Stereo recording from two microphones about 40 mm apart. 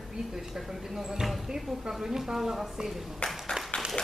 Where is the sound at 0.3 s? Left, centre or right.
Centre.